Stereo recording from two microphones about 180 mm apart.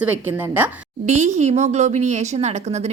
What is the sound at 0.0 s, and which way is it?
Speech, 10° right (ahead or behind).